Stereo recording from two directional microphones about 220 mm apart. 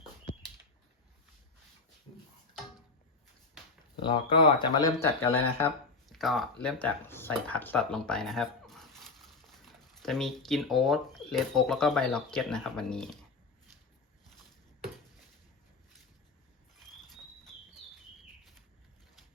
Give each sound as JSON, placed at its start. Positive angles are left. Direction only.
{"t": 4.0, "sound": "speech", "side_deg": 25}
{"t": 5.5, "sound": "speech", "side_deg": 5}